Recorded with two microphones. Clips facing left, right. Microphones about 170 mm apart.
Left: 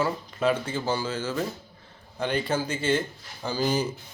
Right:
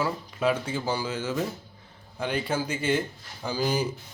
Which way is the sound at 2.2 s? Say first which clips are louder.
Left 2 dB; 5° right (ahead or behind).